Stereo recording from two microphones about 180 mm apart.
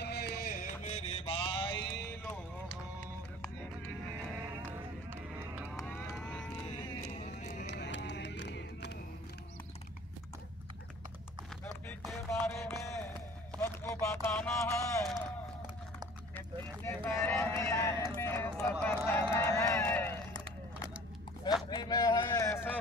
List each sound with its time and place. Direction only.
0.0 s music: 65° left (ahead or behind)
0.8 s music: 35° left (ahead or behind)
4.6 s run: 10° right (ahead or behind)
5.9 s cattle: 10° left (ahead or behind)
7.0 s music: 40° left (ahead or behind)
7.6 s music: 75° left (ahead or behind)
12.3 s music: 15° left (ahead or behind)
13.6 s a sound: 10° left (ahead or behind)
16.3 s a sound: 10° left (ahead or behind)
19.3 s run: 15° left (ahead or behind)
21.6 s a sound: 25° left (ahead or behind)